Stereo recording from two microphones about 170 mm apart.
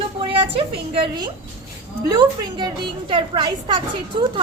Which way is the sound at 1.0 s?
25° right (ahead or behind).